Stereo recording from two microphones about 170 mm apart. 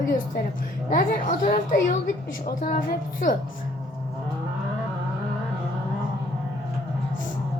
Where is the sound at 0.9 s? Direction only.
55° left (ahead or behind).